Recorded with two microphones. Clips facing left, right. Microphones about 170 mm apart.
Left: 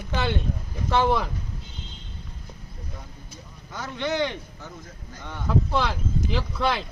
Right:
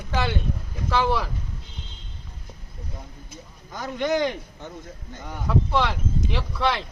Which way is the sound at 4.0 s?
40° right (ahead or behind).